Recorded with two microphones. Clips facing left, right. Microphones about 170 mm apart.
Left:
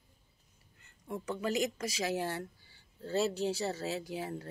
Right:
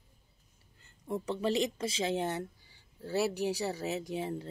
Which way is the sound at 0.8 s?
30° right (ahead or behind).